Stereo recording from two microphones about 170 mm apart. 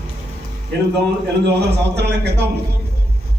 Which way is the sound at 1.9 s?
80° right.